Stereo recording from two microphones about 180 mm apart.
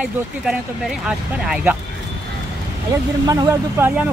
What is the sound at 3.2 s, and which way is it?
Speech, 20° right (ahead or behind).